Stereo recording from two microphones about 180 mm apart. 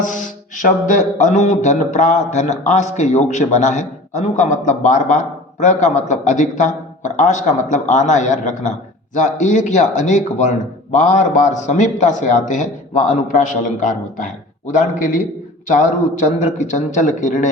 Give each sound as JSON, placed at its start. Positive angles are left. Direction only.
{"t": 0.0, "sound": "mantra", "side_deg": 45}
{"t": 9.1, "sound": "a man's voice", "side_deg": 45}